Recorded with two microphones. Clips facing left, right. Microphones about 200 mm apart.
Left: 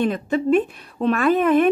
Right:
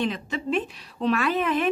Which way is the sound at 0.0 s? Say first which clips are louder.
Left 7 dB; 50° left (ahead or behind).